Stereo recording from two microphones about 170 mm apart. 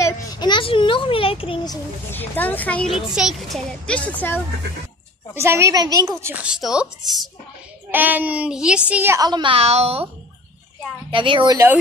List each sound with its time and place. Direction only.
0.0 s a sound: 25° left (ahead or behind)
2.0 s a woman's voice: 10° left (ahead or behind)
5.3 s a woman's voice: 15° right (ahead or behind)
6.3 s speech: 5° right (ahead or behind)
7.9 s a woman's voice: 10° right (ahead or behind); by 10.0 s 35° right (ahead or behind)
11.1 s speech: 30° right (ahead or behind)